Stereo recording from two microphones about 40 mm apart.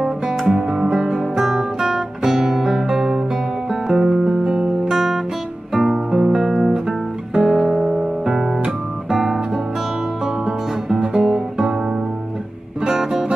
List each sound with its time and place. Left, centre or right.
0.0 s music: centre
0.6 s music: right
0.8 s music: centre
1.4 s guitar: centre
3.9 s music: centre
5.7 s guitar: centre
7.6 s music: centre
9.1 s guitar: centre
10.2 s music: centre
12.8 s music: centre